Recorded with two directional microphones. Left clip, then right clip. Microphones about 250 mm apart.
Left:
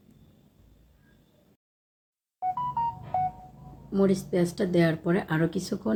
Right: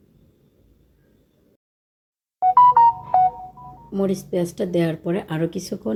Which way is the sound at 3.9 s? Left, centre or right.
Centre.